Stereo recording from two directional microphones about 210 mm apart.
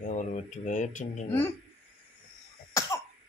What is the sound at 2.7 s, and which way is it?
Cough, 15° left (ahead or behind).